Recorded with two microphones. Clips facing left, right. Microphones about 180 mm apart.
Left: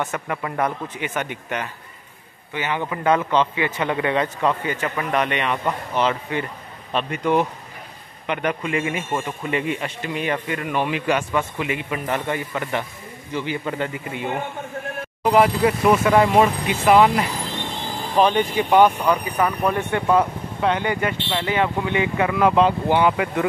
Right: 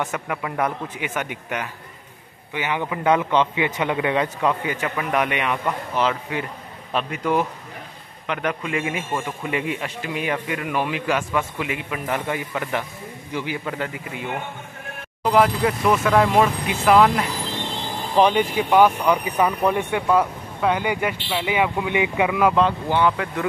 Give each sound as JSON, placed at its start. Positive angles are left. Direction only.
{"t": 0.1, "sound": "a man's voice", "side_deg": -5}
{"t": 15.3, "sound": "speech", "side_deg": 5}
{"t": 18.1, "sound": "speech", "side_deg": -15}
{"t": 18.4, "sound": "speech", "side_deg": -5}
{"t": 19.0, "sound": "a man's voice", "side_deg": -20}
{"t": 22.5, "sound": "speech", "side_deg": 5}